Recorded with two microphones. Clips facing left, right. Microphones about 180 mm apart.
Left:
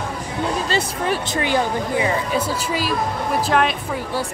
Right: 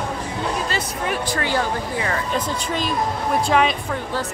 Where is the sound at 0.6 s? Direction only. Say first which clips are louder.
Left 3 dB; 30° left (ahead or behind).